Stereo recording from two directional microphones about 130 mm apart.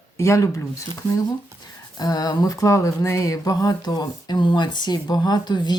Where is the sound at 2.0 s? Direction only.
30° left (ahead or behind).